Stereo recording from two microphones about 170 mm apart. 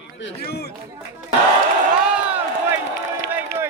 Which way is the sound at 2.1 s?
5° right (ahead or behind).